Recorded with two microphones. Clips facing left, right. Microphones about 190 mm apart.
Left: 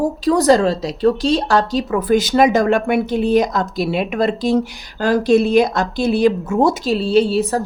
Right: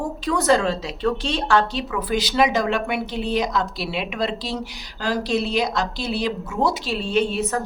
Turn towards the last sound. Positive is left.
turn(degrees=35)  # may be behind; listen again after turning